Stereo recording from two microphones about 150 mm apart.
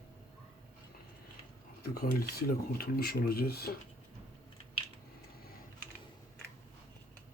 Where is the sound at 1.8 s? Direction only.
90° left.